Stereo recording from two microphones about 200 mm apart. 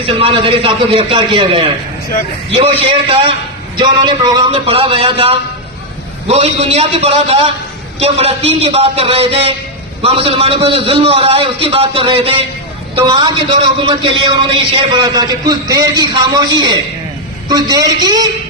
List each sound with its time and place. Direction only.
0.0 s a man's voice: 30° right (ahead or behind)